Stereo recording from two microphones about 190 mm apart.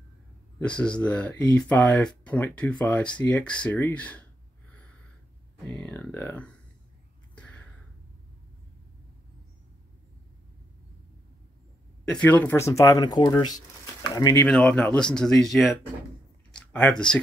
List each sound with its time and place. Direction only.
0.6 s speech: 5° left (ahead or behind)
5.7 s speech: 5° left (ahead or behind)
7.3 s a sound: 5° left (ahead or behind)
12.0 s speech: 5° left (ahead or behind)
14.4 s speech: 5° left (ahead or behind)